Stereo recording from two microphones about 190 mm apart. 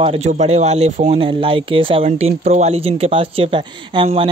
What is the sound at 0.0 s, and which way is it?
Speech, 35° right (ahead or behind).